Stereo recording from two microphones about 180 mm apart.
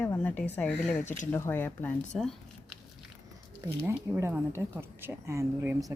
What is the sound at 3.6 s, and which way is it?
Speech, 15° right (ahead or behind).